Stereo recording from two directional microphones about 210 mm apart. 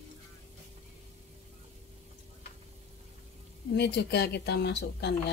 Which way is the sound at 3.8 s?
50° left (ahead or behind).